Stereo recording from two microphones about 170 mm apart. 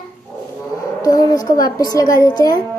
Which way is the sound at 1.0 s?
20° left (ahead or behind).